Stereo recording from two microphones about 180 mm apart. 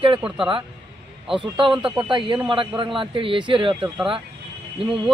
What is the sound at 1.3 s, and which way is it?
A man's voice, 25° right (ahead or behind).